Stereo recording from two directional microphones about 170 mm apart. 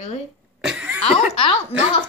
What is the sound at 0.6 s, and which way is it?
Speech, 5° right (ahead or behind).